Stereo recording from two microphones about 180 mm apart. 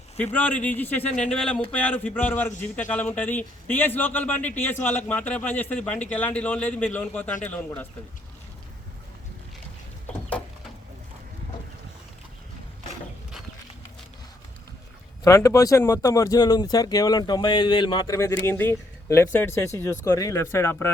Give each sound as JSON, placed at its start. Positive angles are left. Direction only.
{"t": 0.3, "sound": "a man's voice", "side_deg": 10}
{"t": 10.1, "sound": "a sound", "side_deg": 10}
{"t": 15.2, "sound": "a man's voice", "side_deg": 15}